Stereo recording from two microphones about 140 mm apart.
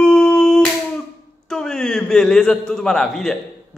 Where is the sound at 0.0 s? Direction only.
5° left (ahead or behind).